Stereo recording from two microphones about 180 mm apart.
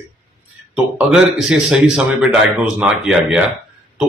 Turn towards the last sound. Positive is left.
turn(degrees=-5)  # may be behind; listen again after turning